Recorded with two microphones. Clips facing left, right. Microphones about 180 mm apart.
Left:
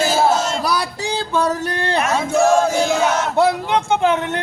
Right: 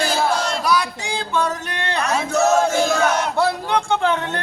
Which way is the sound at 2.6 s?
10° left (ahead or behind).